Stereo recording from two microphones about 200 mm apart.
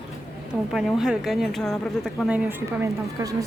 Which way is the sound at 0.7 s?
Centre (ahead or behind).